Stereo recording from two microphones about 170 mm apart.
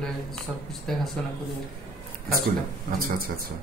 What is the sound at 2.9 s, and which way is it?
Speech, 60° right (ahead or behind).